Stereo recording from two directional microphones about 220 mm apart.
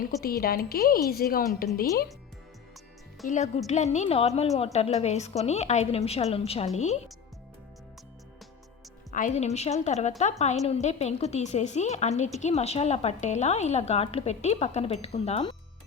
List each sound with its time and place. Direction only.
0.0 s a woman's voice: 40° left (ahead or behind)
3.2 s a woman's voice: 35° left (ahead or behind)
9.1 s a woman's voice: 35° left (ahead or behind)